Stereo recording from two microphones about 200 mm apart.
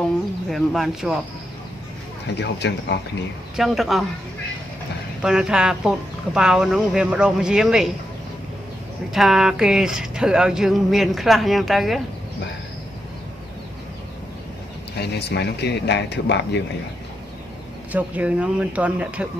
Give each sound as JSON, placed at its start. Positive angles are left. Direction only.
{"t": 0.5, "sound": "speech", "side_deg": 0}
{"t": 2.3, "sound": "speech", "side_deg": 55}
{"t": 3.5, "sound": "speech", "side_deg": 0}
{"t": 5.2, "sound": "speech", "side_deg": -5}
{"t": 9.1, "sound": "speech", "side_deg": 0}
{"t": 15.0, "sound": "speech", "side_deg": 55}
{"t": 17.9, "sound": "speech", "side_deg": -5}